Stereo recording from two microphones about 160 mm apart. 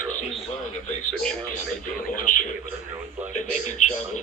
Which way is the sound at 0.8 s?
5° left (ahead or behind).